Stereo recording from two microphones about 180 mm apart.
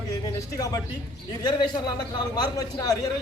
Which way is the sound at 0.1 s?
20° left (ahead or behind).